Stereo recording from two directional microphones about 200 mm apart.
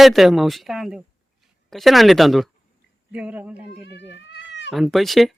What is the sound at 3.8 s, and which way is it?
Speech, 60° left (ahead or behind).